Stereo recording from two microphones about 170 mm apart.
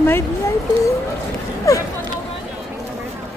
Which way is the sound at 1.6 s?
20° left (ahead or behind).